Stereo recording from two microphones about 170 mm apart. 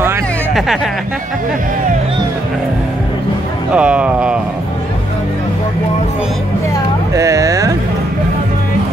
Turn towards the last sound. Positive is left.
turn(degrees=-20)  # may be behind; listen again after turning